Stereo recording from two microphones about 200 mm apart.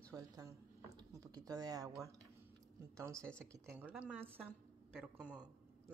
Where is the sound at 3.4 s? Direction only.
15° right (ahead or behind).